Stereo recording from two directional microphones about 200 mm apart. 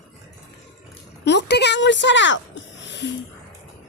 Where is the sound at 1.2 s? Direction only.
60° left (ahead or behind).